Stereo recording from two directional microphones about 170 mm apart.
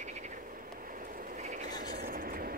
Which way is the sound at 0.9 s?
55° right (ahead or behind).